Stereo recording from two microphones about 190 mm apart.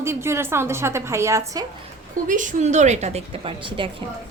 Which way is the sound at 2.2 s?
40° right (ahead or behind).